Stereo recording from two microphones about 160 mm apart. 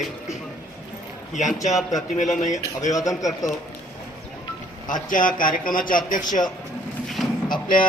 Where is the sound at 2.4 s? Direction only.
50° left (ahead or behind).